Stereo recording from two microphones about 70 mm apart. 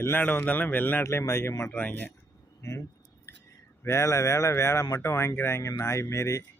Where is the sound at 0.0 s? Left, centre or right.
Left.